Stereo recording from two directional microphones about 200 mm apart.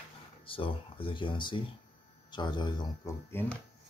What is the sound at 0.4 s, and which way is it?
Speech, 25° left (ahead or behind).